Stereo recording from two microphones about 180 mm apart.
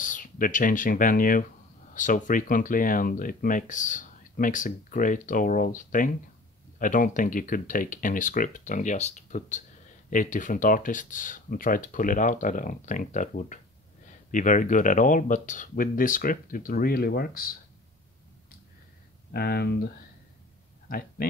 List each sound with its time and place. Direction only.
0.0 s speech: 45° left (ahead or behind)
19.3 s speech: 60° left (ahead or behind)